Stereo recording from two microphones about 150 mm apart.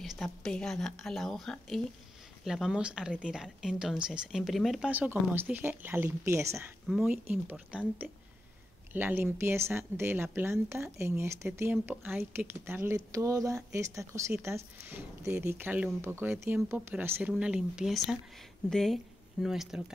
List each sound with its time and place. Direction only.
0.0 s speech: centre (ahead or behind)